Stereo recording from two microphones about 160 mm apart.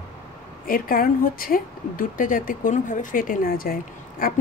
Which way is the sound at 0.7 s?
60° left (ahead or behind).